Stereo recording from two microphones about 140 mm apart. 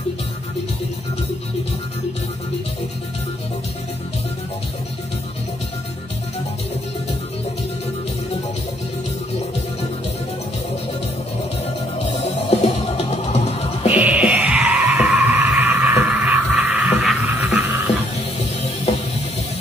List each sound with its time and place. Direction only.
11.6 s music: 50° left (ahead or behind)
13.9 s music: 10° right (ahead or behind)
18.9 s music: 50° left (ahead or behind)